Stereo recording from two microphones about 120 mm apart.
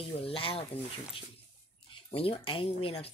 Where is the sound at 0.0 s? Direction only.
50° left (ahead or behind).